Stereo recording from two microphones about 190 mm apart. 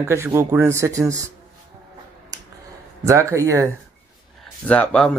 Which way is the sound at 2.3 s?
20° right (ahead or behind).